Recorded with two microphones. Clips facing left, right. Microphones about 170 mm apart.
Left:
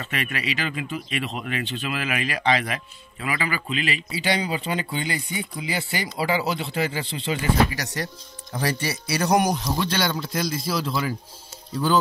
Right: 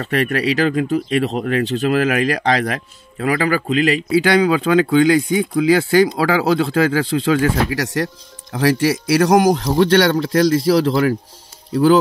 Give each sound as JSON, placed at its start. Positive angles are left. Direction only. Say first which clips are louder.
{"t": 0.0, "sound": "speech", "louder": "right 11 dB", "side_deg": -40}
{"t": 4.4, "sound": "speech", "louder": "right 13 dB", "side_deg": -90}